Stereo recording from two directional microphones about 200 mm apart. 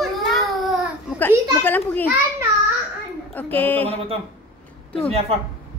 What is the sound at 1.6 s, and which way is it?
Speech, 10° left (ahead or behind).